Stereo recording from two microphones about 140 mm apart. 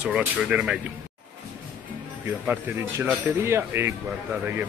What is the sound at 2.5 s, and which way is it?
Speech, 15° right (ahead or behind).